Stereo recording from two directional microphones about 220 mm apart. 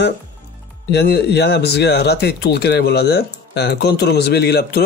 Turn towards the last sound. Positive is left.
turn(degrees=45)  # may be behind; listen again after turning